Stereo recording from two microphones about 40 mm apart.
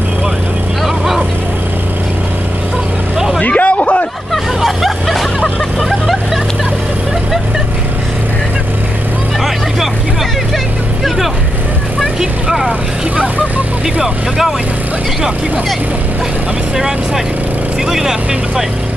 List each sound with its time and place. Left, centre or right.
0.8 s vehicle: centre
3.4 s a sound: left
4.6 s hubbub: centre
5.9 s vehicle: centre
12.2 s vehicle: centre
16.7 s vehicle: centre